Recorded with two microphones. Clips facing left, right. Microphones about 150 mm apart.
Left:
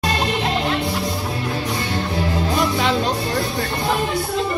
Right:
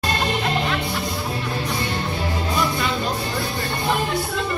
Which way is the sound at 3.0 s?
Centre (ahead or behind).